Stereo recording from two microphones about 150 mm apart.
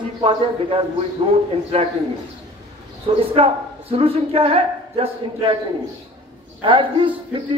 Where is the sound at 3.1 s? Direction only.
40° right (ahead or behind).